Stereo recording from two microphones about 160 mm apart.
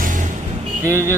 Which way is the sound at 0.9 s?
15° left (ahead or behind).